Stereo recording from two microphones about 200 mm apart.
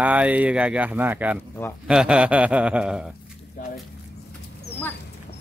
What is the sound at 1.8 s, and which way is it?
Mantra, 5° right (ahead or behind).